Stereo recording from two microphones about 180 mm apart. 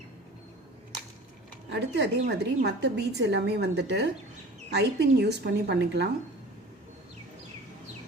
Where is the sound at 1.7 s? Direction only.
70° right (ahead or behind).